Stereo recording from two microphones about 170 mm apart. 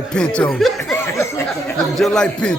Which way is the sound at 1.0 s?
15° left (ahead or behind).